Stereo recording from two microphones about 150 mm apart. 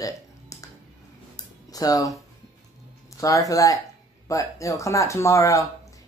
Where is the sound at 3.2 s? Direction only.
20° left (ahead or behind).